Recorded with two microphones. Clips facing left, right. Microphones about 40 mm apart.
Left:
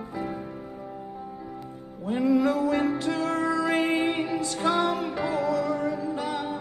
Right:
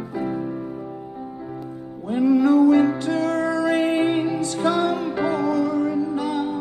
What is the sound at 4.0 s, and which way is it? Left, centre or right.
Music, right.